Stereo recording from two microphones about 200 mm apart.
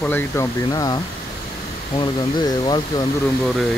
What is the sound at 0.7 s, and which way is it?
Speech, 20° left (ahead or behind).